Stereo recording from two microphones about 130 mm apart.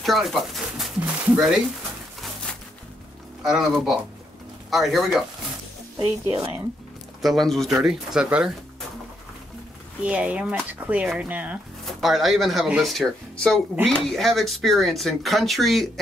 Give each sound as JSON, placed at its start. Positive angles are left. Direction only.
{"t": 0.0, "sound": "speech", "side_deg": 0}
{"t": 3.4, "sound": "speech", "side_deg": 0}
{"t": 6.0, "sound": "speech", "side_deg": -20}
{"t": 7.2, "sound": "speech", "side_deg": 0}
{"t": 10.0, "sound": "speech", "side_deg": -10}
{"t": 11.8, "sound": "speech", "side_deg": 0}